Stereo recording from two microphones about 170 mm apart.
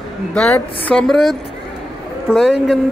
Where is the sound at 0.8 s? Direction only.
5° left (ahead or behind).